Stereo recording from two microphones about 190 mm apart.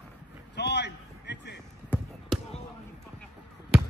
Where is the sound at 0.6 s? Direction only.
65° left (ahead or behind).